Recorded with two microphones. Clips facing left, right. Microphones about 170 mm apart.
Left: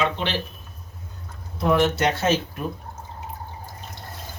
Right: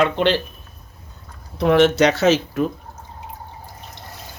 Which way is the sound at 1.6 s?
80° right.